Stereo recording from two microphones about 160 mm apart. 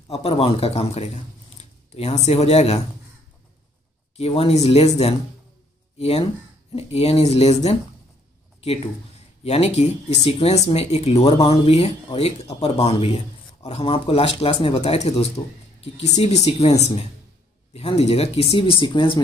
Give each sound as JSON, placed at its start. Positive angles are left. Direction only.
{"t": 0.1, "sound": "speech", "side_deg": 40}
{"t": 4.2, "sound": "speech", "side_deg": 40}
{"t": 9.4, "sound": "speech", "side_deg": 40}